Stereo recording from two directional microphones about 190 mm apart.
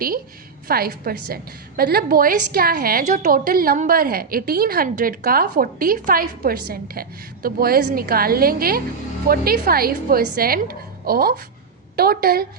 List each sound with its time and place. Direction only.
0.7 s a woman's voice: 50° right (ahead or behind)